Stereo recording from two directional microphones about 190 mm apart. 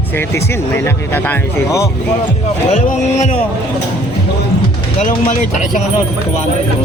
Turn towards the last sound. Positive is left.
turn(degrees=40)  # may be behind; listen again after turning